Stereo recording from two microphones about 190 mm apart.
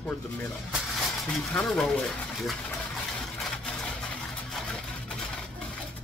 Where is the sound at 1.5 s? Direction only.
5° left (ahead or behind).